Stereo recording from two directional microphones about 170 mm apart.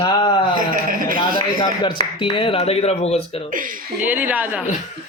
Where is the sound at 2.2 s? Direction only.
30° left (ahead or behind).